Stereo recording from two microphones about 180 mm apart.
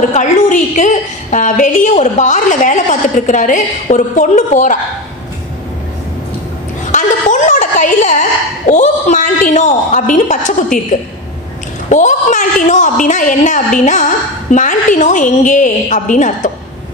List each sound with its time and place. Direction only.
0.1 s a woman's voice: 45° left (ahead or behind)
6.9 s a woman's voice: 45° left (ahead or behind)
11.9 s a woman's voice: 45° left (ahead or behind)